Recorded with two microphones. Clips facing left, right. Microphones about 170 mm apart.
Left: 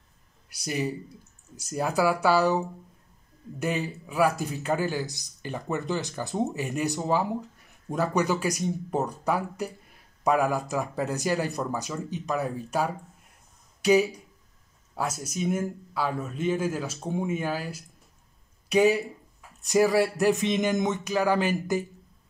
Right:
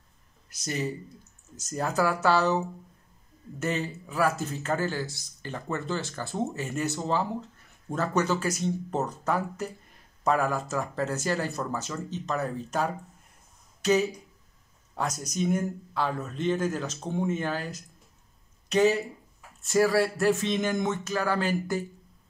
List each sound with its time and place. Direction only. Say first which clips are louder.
0.5 s speech: left 2 dB; 10° left (ahead or behind)